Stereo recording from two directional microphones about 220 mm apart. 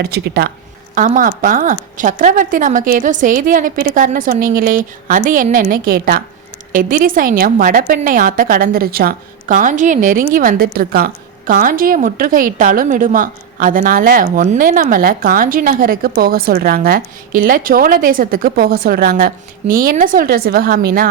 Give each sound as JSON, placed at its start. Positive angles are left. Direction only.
{"t": 0.0, "sound": "speech", "side_deg": -45}
{"t": 0.9, "sound": "a woman's voice", "side_deg": -35}